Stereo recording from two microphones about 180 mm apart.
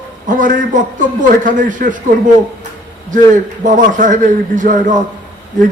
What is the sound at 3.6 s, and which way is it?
A man's voice, 45° right (ahead or behind).